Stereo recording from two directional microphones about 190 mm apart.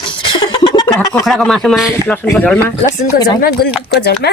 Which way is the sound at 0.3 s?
25° left (ahead or behind).